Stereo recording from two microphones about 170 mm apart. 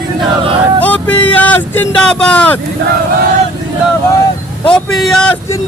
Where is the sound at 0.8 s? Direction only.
10° left (ahead or behind).